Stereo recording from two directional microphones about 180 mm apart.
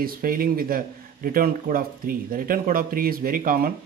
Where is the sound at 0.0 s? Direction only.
50° right (ahead or behind).